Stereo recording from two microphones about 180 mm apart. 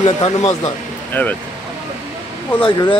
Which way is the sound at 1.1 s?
10° left (ahead or behind).